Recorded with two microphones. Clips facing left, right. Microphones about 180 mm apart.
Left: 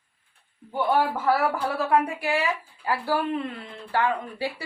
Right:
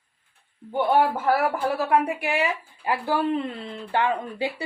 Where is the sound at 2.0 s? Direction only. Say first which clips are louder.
Right 1 dB; 15° right (ahead or behind).